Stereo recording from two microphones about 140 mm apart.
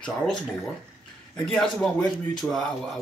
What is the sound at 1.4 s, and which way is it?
Speech, centre (ahead or behind).